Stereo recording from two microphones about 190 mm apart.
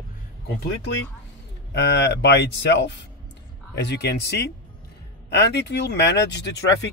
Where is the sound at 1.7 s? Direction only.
65° left (ahead or behind).